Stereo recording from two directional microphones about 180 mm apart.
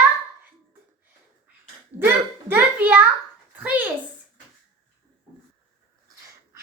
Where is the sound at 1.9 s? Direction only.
10° right (ahead or behind).